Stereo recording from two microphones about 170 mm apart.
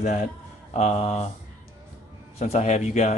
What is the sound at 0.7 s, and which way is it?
Speech, 40° left (ahead or behind).